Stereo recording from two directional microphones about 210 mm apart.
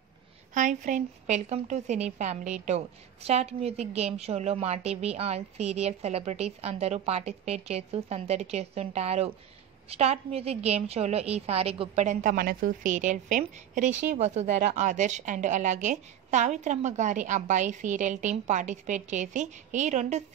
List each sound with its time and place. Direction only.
0.6 s a woman's voice: 35° right (ahead or behind)